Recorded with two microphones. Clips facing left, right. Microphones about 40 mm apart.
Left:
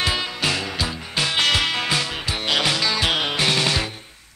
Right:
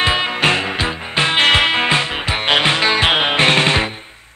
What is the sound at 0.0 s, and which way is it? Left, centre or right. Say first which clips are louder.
Music: right 7 dB; right.